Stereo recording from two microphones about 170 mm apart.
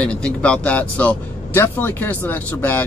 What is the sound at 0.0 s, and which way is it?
Speech, 5° left (ahead or behind).